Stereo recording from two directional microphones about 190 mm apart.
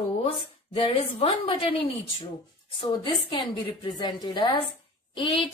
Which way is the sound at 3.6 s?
25° left (ahead or behind).